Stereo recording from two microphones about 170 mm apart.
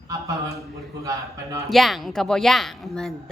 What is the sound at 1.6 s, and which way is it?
A woman's voice, centre (ahead or behind).